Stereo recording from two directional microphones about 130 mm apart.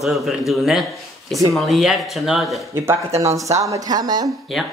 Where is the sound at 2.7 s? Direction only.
20° right (ahead or behind).